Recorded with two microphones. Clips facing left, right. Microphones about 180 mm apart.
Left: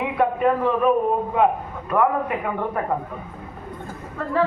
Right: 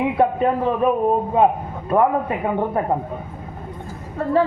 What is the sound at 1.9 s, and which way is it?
Speech, 30° right (ahead or behind).